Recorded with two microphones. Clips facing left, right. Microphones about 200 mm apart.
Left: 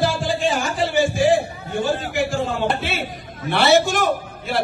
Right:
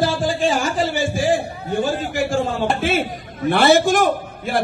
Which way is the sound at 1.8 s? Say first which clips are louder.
Even; 45° right (ahead or behind).